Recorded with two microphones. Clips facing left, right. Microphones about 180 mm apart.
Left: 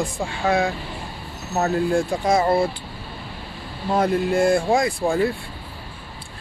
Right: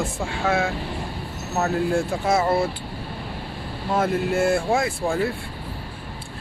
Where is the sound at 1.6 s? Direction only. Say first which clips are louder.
Left 2 dB; 15° left (ahead or behind).